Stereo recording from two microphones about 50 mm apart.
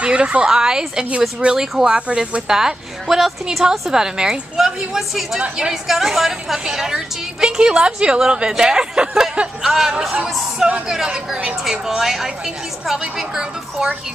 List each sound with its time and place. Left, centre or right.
0.0 s a woman's voice: right
2.0 s speech: right
2.4 s a woman's voice: centre
13.3 s a woman's voice: centre